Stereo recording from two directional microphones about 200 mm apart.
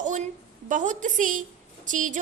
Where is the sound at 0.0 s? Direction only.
35° right (ahead or behind).